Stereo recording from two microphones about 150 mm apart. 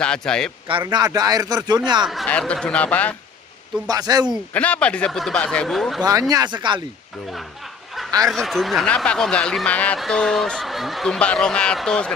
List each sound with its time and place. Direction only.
0.0 s speech: 5° left (ahead or behind)
0.9 s speech: 25° right (ahead or behind)
2.2 s speech: 10° left (ahead or behind)
3.8 s speech: 25° right (ahead or behind)
4.6 s speech: 10° left (ahead or behind)
6.0 s speech: 25° right (ahead or behind)
8.3 s speech: centre (ahead or behind)